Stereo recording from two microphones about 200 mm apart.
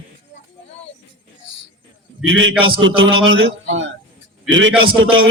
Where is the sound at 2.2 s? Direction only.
75° right (ahead or behind).